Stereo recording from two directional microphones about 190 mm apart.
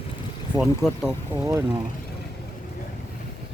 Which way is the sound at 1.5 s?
15° right (ahead or behind).